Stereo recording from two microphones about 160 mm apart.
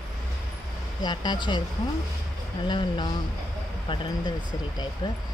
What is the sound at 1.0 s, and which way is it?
Speech, 25° left (ahead or behind).